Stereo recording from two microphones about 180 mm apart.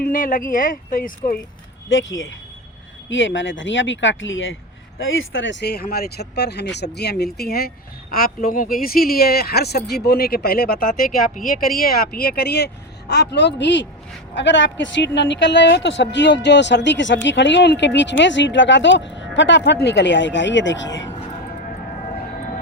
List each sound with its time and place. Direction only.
0.0 s speech: 50° left (ahead or behind)
1.9 s speech: 90° left
14.3 s speech: 90° left
21.0 s music: 30° left (ahead or behind)